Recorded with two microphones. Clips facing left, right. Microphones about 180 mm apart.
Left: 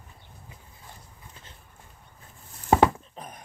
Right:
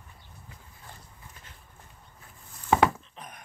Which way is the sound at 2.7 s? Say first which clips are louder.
Left 3 dB; 35° left (ahead or behind).